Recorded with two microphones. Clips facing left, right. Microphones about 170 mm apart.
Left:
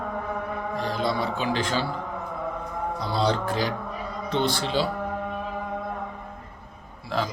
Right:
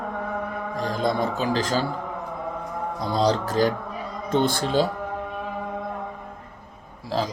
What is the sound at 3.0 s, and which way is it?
Speech, 40° right (ahead or behind).